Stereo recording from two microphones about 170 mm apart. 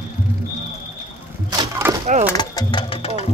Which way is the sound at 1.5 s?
20° right (ahead or behind).